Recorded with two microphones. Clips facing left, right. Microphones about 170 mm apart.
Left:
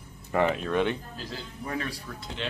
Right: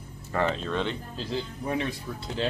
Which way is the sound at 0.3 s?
15° left (ahead or behind).